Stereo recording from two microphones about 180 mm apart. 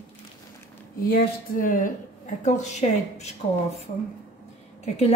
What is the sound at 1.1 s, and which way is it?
Speech, 50° left (ahead or behind).